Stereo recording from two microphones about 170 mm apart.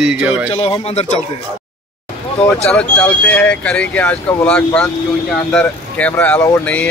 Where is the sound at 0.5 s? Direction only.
35° left (ahead or behind).